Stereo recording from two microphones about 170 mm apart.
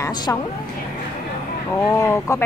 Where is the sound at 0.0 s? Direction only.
20° left (ahead or behind).